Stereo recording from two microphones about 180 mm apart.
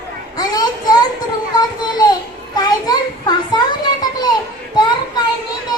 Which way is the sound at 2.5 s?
20° left (ahead or behind).